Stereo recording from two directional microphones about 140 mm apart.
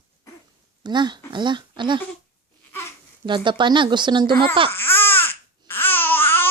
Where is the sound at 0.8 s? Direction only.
30° right (ahead or behind).